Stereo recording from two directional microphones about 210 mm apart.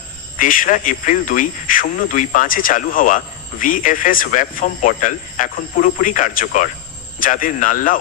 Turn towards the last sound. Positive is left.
turn(degrees=40)  # may be behind; listen again after turning